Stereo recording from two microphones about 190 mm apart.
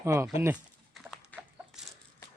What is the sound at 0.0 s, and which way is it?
Speech, 15° right (ahead or behind).